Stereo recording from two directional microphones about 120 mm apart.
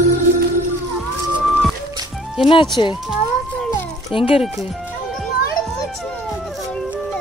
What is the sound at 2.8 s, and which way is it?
Speech, 45° left (ahead or behind).